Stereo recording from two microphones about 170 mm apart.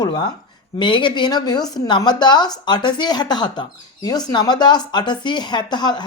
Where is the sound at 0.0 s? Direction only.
25° left (ahead or behind).